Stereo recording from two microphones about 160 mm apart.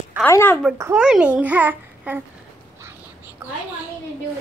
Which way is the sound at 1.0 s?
5° right (ahead or behind).